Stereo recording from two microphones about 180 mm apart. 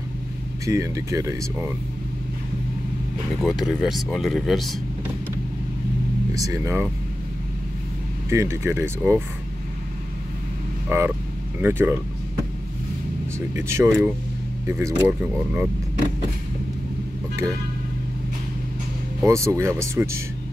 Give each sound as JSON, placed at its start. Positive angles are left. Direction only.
{"t": 0.7, "sound": "speech", "side_deg": -15}
{"t": 3.3, "sound": "speech", "side_deg": 0}
{"t": 6.3, "sound": "speech", "side_deg": -20}
{"t": 8.3, "sound": "speech", "side_deg": -15}
{"t": 10.9, "sound": "speech", "side_deg": -15}
{"t": 13.6, "sound": "speech", "side_deg": -15}
{"t": 19.2, "sound": "speech", "side_deg": -15}